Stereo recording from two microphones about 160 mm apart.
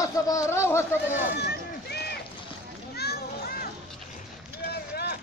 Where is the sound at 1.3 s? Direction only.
90° left.